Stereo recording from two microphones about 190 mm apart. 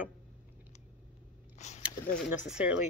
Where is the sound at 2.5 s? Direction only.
5° right (ahead or behind).